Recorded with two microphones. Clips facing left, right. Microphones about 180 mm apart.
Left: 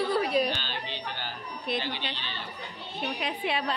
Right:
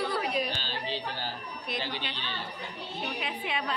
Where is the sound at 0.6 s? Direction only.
35° right (ahead or behind).